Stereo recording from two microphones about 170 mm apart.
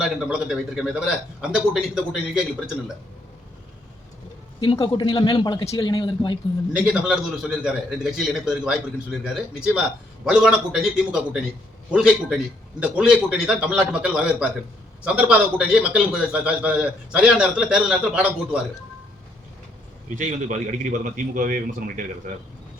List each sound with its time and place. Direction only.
0.0 s a man's voice: 5° right (ahead or behind)
4.6 s speech: 30° left (ahead or behind)
6.7 s a man's voice: 5° right (ahead or behind)
20.1 s a man's voice: 45° right (ahead or behind)